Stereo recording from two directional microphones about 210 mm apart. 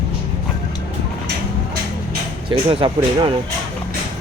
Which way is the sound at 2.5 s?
25° right (ahead or behind).